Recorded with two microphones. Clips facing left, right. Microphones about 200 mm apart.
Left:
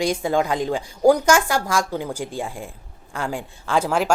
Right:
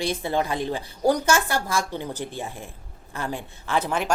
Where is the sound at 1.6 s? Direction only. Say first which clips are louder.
Left 4 dB; 90° left.